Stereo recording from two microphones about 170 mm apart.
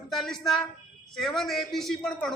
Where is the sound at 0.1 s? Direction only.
Centre (ahead or behind).